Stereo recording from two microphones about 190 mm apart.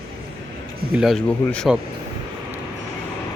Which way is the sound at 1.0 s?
Centre (ahead or behind).